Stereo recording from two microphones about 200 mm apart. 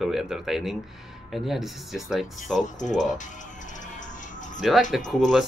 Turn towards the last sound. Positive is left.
turn(degrees=0)  # may be behind; listen again after turning